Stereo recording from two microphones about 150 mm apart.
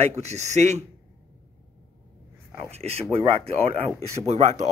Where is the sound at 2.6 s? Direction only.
45° right (ahead or behind).